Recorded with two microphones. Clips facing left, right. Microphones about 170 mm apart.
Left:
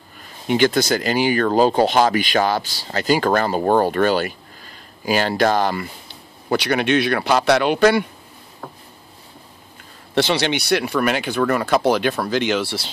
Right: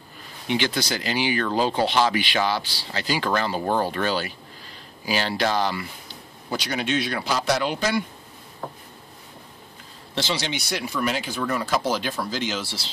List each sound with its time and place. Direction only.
0.5 s speech: 50° left (ahead or behind); by 8.0 s 70° left (ahead or behind)
10.1 s speech: 65° left (ahead or behind)